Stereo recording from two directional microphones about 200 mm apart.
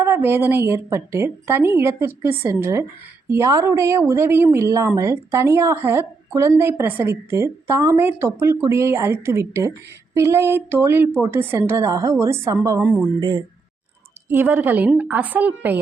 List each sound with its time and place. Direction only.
0.0 s a woman's voice: 10° right (ahead or behind)